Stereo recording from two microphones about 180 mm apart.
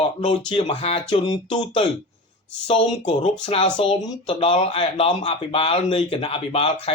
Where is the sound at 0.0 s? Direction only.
30° left (ahead or behind).